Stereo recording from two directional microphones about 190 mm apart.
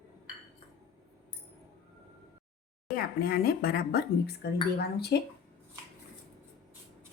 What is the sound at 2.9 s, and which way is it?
Speech, 50° left (ahead or behind).